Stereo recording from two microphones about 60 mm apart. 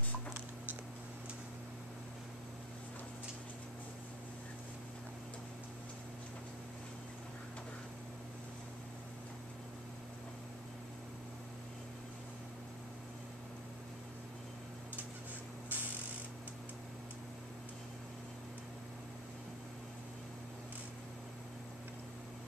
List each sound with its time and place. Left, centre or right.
15.7 s mechanisms: right